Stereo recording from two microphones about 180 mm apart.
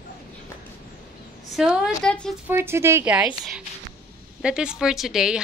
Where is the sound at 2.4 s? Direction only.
15° right (ahead or behind).